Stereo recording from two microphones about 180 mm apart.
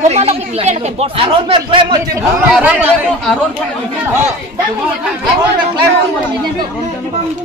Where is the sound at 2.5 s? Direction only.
5° right (ahead or behind).